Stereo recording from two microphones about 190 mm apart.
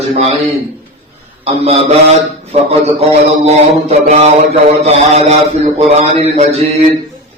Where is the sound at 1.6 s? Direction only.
30° right (ahead or behind).